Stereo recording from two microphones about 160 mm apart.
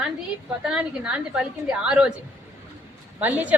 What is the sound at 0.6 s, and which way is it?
A woman's voice, 5° right (ahead or behind).